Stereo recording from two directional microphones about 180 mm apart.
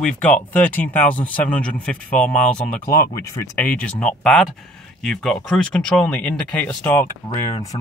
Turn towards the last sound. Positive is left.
turn(degrees=20)  # may be behind; listen again after turning